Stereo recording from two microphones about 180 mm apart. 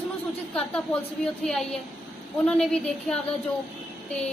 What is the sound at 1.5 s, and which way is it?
A woman's voice, centre (ahead or behind).